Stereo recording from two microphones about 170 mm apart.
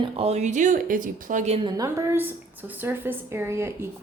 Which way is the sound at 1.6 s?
20° right (ahead or behind).